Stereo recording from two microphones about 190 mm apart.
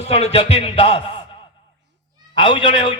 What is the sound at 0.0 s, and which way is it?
Music, 30° left (ahead or behind).